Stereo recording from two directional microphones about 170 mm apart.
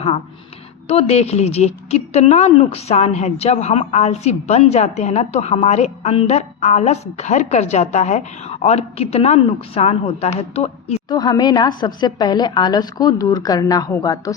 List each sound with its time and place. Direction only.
0.9 s a woman's voice: 35° left (ahead or behind)
11.1 s a woman's voice: 25° left (ahead or behind)